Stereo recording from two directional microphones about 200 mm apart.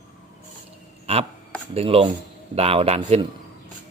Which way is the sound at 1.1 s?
30° right (ahead or behind).